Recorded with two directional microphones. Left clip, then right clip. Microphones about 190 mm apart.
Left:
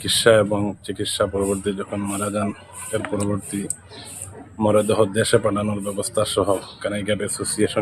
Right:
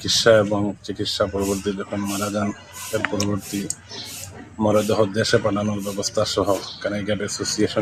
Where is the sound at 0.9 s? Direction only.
30° left (ahead or behind).